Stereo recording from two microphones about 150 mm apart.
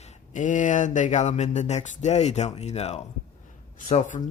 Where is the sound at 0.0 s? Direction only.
55° left (ahead or behind).